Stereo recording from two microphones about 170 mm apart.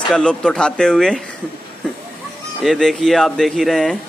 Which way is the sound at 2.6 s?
Centre (ahead or behind).